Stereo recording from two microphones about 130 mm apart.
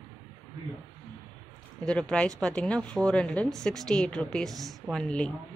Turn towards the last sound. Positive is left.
turn(degrees=5)  # may be behind; listen again after turning